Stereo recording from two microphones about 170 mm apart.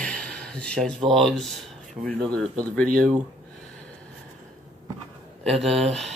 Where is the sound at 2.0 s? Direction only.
10° right (ahead or behind).